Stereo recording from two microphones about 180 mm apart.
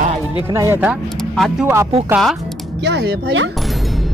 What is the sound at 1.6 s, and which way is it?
Speech, 15° right (ahead or behind).